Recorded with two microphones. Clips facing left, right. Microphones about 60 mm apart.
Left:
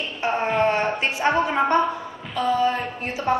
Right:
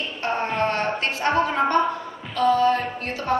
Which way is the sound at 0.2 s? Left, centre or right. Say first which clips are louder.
Left 3 dB; centre.